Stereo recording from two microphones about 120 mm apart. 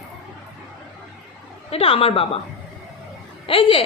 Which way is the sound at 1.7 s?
50° left (ahead or behind).